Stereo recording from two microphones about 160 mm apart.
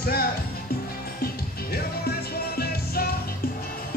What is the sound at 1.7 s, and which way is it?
Music, 75° left (ahead or behind).